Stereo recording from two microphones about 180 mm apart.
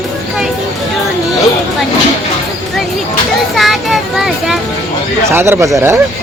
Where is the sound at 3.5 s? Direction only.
Centre (ahead or behind).